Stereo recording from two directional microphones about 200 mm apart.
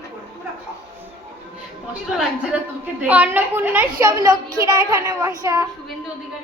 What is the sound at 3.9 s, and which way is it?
A woman's voice, 20° right (ahead or behind).